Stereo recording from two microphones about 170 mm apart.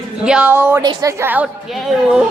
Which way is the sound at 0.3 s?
5° right (ahead or behind).